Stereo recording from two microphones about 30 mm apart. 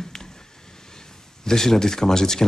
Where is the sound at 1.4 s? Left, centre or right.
Centre.